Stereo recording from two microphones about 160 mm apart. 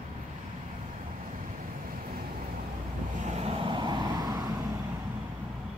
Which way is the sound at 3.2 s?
45° right (ahead or behind).